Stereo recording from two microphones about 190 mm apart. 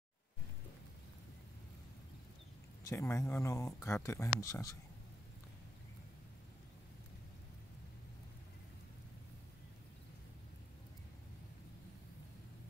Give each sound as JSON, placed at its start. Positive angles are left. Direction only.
{"t": 2.9, "sound": "speech", "side_deg": 15}